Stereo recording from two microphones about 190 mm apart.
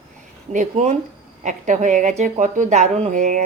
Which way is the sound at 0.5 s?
40° right (ahead or behind).